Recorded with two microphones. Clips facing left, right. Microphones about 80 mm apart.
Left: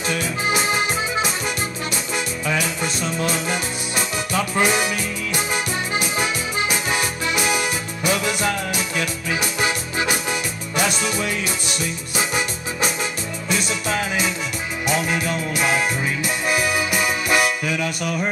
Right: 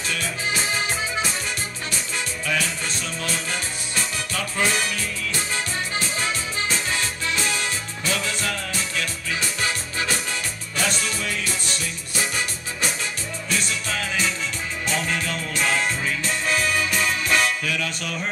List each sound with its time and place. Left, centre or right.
0.1 s music: centre
2.4 s music: centre